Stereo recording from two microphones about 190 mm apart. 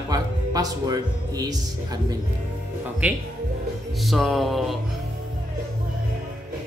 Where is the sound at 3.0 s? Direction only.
10° right (ahead or behind).